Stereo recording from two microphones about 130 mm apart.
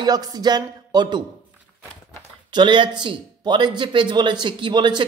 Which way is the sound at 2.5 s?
40° right (ahead or behind).